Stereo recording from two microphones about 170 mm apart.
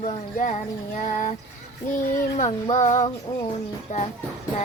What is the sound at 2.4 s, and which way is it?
Child singing, 45° left (ahead or behind).